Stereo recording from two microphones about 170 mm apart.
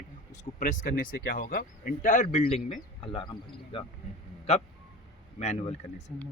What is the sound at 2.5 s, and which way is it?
Speech, 35° left (ahead or behind).